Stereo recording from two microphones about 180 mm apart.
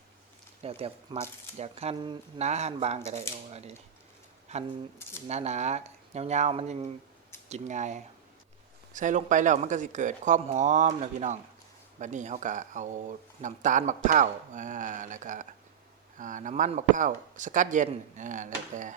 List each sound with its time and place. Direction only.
0.6 s speech: 30° right (ahead or behind)
5.3 s speech: 40° right (ahead or behind)